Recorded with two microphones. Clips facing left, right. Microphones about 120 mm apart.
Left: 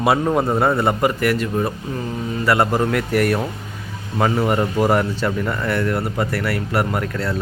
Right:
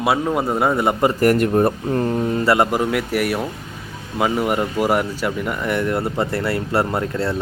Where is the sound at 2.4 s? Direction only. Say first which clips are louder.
Even; 25° right (ahead or behind).